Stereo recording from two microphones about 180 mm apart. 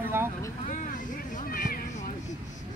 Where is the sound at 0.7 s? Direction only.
45° left (ahead or behind).